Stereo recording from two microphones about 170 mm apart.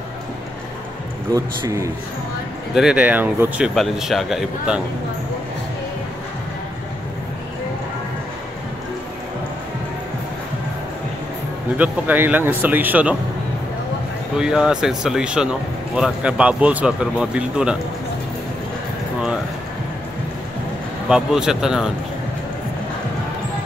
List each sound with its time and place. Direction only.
1.3 s speech: 20° right (ahead or behind)
2.7 s speech: 5° right (ahead or behind)
11.7 s speech: 10° right (ahead or behind)
14.3 s speech: 5° right (ahead or behind)
21.1 s speech: 5° right (ahead or behind)